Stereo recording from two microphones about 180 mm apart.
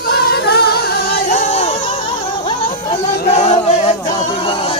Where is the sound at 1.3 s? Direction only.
40° left (ahead or behind).